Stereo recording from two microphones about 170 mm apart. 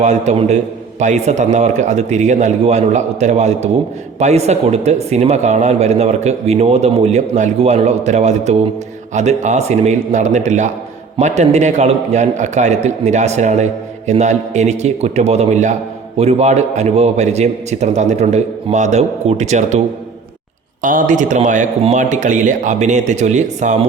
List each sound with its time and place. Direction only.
0.0 s a man's voice: 45° right (ahead or behind)
20.8 s a man's voice: 50° right (ahead or behind)